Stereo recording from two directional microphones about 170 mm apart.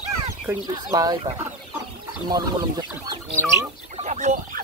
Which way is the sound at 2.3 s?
25° right (ahead or behind).